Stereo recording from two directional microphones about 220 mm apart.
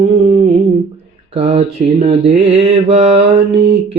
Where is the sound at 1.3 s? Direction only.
30° right (ahead or behind).